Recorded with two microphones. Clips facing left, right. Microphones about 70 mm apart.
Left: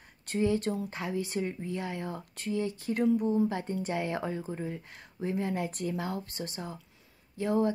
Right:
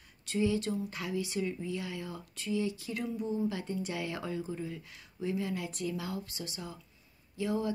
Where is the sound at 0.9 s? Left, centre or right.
Left.